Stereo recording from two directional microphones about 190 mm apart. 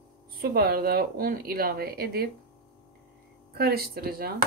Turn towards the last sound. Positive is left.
turn(degrees=-55)  # may be behind; listen again after turning